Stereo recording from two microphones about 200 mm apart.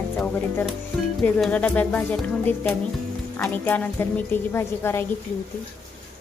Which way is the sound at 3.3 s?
10° left (ahead or behind).